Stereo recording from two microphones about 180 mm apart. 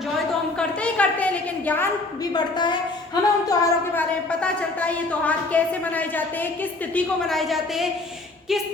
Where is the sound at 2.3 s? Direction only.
25° left (ahead or behind).